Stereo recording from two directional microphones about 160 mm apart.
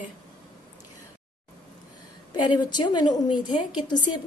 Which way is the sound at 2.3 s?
30° left (ahead or behind).